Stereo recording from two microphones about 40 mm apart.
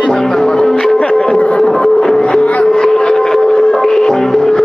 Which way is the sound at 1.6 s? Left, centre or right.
Centre.